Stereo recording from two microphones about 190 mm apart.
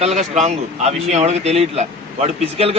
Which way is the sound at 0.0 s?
35° right (ahead or behind).